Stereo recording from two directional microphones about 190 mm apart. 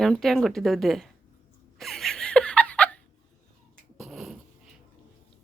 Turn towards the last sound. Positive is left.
turn(degrees=-5)  # may be behind; listen again after turning